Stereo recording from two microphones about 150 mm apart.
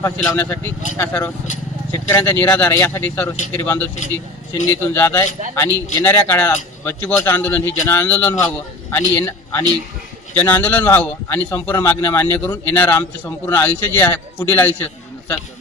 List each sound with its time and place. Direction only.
0.0 s a man's voice: 15° left (ahead or behind)